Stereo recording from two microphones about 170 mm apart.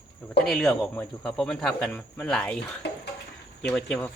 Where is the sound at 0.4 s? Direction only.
5° left (ahead or behind).